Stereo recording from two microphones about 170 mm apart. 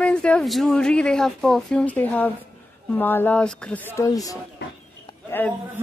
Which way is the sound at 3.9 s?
20° left (ahead or behind).